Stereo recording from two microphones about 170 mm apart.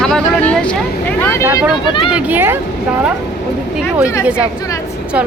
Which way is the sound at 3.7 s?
10° right (ahead or behind).